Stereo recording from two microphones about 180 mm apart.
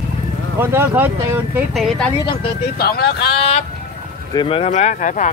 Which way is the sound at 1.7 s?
Centre (ahead or behind).